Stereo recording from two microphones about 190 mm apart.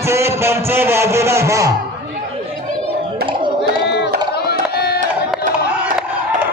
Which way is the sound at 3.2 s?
25° right (ahead or behind).